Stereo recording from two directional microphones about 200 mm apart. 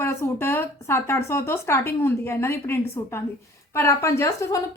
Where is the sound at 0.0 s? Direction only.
15° left (ahead or behind).